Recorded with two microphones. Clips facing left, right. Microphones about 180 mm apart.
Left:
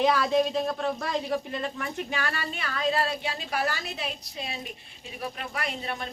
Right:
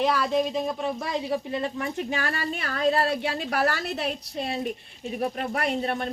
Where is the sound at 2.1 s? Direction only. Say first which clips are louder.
Right 3 dB; 40° right (ahead or behind).